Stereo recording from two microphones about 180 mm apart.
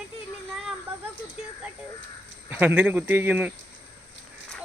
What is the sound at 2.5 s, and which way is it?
Speech, 10° right (ahead or behind).